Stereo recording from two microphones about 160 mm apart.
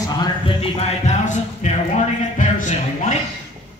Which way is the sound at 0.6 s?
40° left (ahead or behind).